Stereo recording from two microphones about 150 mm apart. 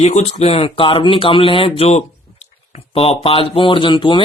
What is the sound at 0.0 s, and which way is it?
Speech, 45° left (ahead or behind).